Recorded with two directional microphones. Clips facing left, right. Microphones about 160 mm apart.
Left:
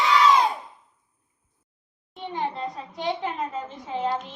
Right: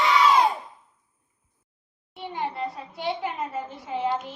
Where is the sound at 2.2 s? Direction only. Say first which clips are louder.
Left 1 dB; 10° right (ahead or behind).